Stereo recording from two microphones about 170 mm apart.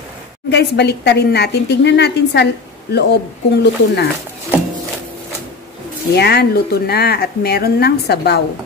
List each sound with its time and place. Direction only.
0.5 s a woman's voice: 80° left
6.1 s a woman's voice: 75° left (ahead or behind)